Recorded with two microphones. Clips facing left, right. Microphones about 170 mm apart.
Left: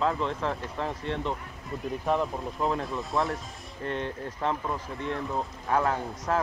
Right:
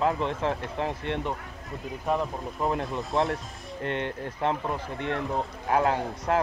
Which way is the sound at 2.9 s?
20° right (ahead or behind).